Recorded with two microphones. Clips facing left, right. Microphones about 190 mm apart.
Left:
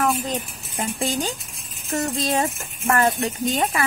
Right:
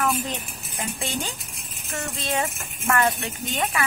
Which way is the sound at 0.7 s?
35° left (ahead or behind).